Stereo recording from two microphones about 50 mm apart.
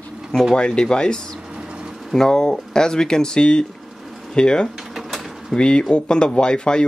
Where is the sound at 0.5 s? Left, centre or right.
Centre.